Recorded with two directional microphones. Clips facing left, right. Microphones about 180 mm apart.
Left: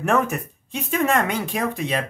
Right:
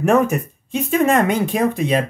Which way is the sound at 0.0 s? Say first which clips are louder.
Right 6 dB; 15° right (ahead or behind).